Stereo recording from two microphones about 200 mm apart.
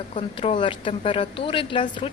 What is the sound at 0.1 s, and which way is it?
Speech, 30° left (ahead or behind).